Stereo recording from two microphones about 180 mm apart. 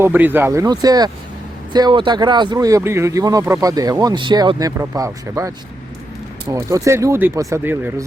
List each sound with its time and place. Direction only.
0.0 s speech: 10° right (ahead or behind)